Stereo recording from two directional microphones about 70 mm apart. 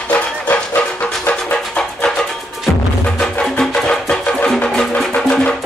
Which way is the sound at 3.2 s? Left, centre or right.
Centre.